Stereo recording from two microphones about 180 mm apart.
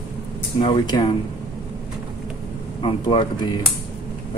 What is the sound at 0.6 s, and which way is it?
Speech, 30° left (ahead or behind).